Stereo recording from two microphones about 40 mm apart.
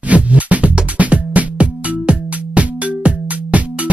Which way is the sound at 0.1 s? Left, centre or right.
Right.